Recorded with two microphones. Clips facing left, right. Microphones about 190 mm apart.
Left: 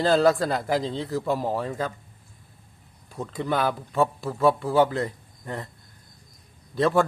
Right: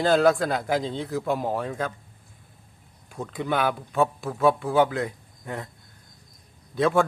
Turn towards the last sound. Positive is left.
turn(degrees=0)  # may be behind; listen again after turning